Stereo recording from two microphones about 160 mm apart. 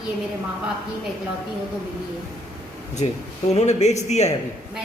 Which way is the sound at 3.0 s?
40° left (ahead or behind).